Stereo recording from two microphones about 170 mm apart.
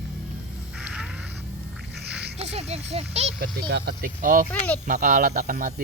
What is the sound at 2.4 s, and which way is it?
Speech, 35° right (ahead or behind).